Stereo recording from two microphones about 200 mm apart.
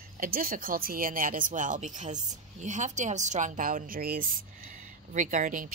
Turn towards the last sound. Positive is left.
turn(degrees=-40)  # may be behind; listen again after turning